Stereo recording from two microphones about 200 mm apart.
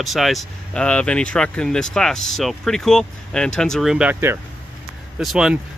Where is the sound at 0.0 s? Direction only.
Centre (ahead or behind).